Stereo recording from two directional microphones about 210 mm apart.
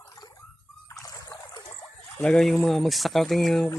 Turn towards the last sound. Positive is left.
turn(degrees=0)  # may be behind; listen again after turning